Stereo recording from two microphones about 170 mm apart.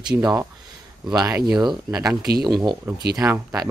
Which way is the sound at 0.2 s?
15° right (ahead or behind).